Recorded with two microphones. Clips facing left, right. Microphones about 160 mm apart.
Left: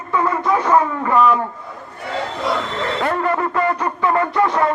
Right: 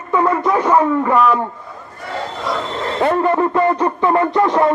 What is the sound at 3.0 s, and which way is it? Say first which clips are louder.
Speech: right 6 dB; 25° right (ahead or behind).